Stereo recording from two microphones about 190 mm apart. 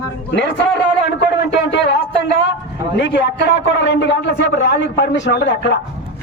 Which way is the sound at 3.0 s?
65° left (ahead or behind).